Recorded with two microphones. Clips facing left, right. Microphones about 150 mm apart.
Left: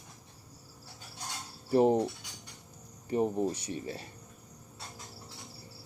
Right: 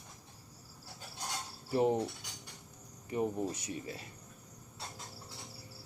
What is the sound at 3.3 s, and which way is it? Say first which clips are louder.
Speech: left 5 dB; 30° left (ahead or behind).